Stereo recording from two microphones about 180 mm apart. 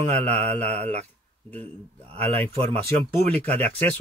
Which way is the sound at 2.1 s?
30° right (ahead or behind).